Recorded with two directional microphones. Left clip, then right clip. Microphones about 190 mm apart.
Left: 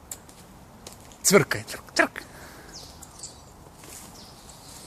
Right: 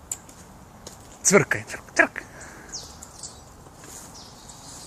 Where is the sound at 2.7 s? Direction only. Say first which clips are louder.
Right 8 dB; 55° right (ahead or behind).